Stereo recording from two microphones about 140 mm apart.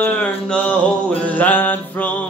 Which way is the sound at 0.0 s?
10° left (ahead or behind).